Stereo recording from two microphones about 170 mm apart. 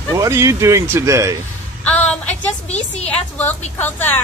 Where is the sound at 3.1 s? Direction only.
10° left (ahead or behind).